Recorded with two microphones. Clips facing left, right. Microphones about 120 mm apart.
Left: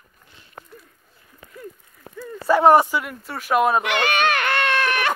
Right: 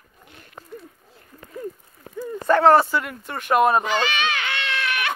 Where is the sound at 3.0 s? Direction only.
Centre (ahead or behind).